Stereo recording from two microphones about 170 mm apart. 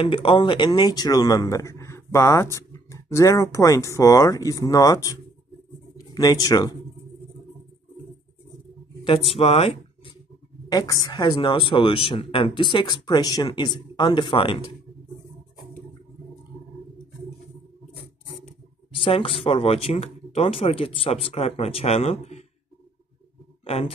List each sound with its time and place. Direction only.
0.0 s speech: 30° left (ahead or behind)
6.1 s speech: 20° left (ahead or behind)
9.0 s speech: 35° left (ahead or behind)
10.7 s speech: 20° left (ahead or behind)
18.9 s speech: 30° left (ahead or behind)
23.6 s speech: 35° left (ahead or behind)